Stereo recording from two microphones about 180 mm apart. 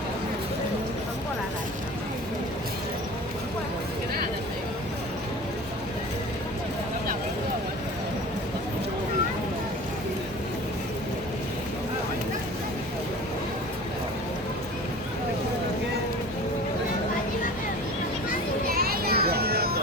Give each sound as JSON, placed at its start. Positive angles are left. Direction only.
{"t": 18.8, "sound": "children playing", "side_deg": -60}